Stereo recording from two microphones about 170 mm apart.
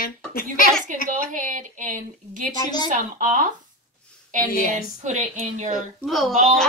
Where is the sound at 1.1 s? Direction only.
50° right (ahead or behind).